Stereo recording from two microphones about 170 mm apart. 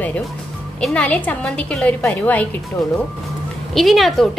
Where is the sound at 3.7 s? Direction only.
Centre (ahead or behind).